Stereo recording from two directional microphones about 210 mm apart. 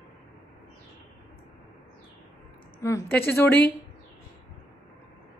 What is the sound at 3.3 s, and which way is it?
Speech, 10° left (ahead or behind).